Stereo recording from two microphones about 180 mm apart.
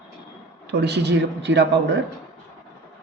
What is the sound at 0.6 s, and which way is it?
Speech, 65° right (ahead or behind).